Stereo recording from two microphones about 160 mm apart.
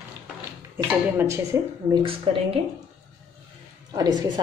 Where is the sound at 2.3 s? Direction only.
40° right (ahead or behind).